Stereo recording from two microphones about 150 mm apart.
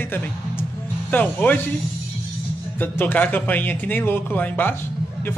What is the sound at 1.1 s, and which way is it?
Speech, 10° left (ahead or behind).